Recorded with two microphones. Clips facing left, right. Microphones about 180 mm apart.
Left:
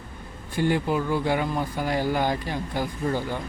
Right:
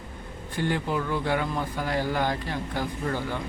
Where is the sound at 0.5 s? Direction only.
10° left (ahead or behind).